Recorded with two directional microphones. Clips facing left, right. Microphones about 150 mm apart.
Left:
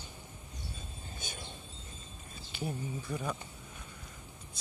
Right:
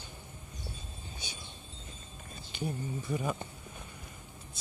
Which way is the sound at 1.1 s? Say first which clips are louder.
Left 3 dB; 50° left (ahead or behind).